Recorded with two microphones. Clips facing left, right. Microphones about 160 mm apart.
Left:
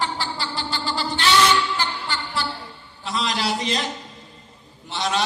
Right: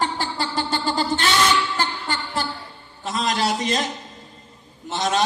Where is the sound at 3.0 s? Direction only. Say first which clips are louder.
Right 2 dB; 45° right (ahead or behind).